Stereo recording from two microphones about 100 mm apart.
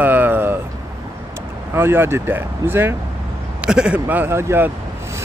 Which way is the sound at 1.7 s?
25° right (ahead or behind).